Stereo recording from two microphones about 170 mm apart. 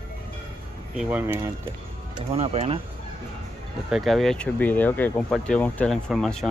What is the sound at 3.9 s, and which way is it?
Speech, centre (ahead or behind).